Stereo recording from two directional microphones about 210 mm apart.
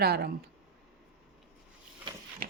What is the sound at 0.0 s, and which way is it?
Speech, 50° right (ahead or behind).